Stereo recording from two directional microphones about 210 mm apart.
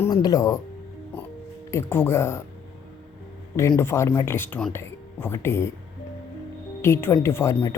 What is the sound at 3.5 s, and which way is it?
Speech, 15° left (ahead or behind).